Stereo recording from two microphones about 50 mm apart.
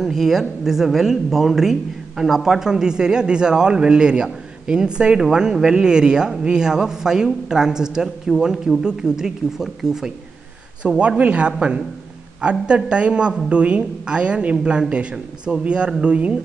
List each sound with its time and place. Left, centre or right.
0.0 s speech: centre
10.8 s speech: right